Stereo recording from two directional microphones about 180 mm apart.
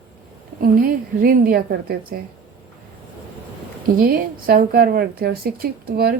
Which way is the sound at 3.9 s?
55° right (ahead or behind).